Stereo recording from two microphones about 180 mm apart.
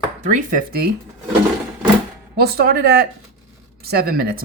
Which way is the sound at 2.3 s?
60° right (ahead or behind).